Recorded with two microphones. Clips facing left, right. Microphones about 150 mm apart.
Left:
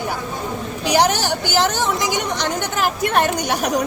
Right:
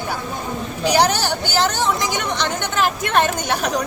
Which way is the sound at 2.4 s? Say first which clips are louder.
Even; 10° left (ahead or behind).